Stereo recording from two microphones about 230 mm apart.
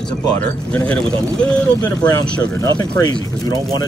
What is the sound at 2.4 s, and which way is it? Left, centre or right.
Speech, centre.